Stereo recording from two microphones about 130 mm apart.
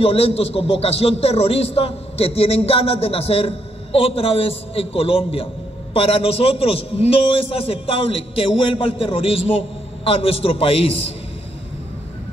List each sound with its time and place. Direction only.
0.0 s a man's voice: 50° left (ahead or behind)